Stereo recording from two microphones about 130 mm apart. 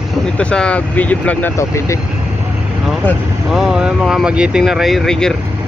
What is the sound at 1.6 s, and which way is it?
Speech, 25° left (ahead or behind).